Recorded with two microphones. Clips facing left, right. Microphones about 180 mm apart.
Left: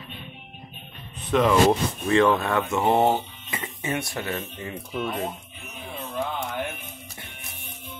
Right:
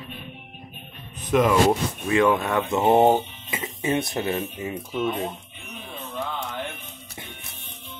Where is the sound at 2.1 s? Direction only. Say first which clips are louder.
Even; 15° right (ahead or behind).